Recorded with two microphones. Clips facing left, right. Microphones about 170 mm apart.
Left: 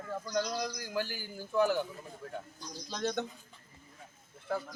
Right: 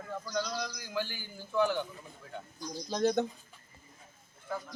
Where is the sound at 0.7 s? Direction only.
45° left (ahead or behind).